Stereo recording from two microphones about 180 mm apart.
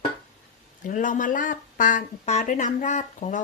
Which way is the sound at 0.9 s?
45° left (ahead or behind).